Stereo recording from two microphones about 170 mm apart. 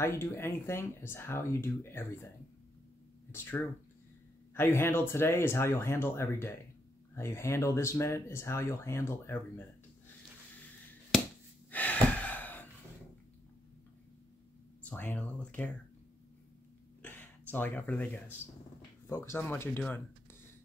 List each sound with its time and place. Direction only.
0.0 s speech: 15° left (ahead or behind)
11.7 s gasp: 10° left (ahead or behind)
14.9 s speech: 10° left (ahead or behind)
17.0 s a sound: 10° left (ahead or behind)
19.0 s speech: 15° left (ahead or behind)